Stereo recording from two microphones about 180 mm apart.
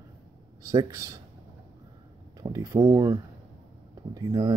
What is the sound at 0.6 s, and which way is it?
Speech, 20° right (ahead or behind).